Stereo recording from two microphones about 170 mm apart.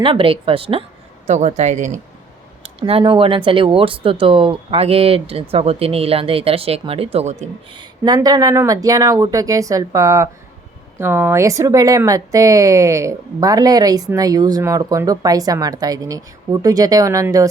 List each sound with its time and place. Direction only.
0.0 s speech: 30° right (ahead or behind)
1.3 s speech: 45° right (ahead or behind)
2.6 s speech: 35° right (ahead or behind)
7.7 s speech: 25° right (ahead or behind)